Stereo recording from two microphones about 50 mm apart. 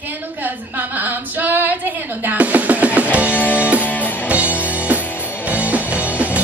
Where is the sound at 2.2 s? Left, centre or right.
Right.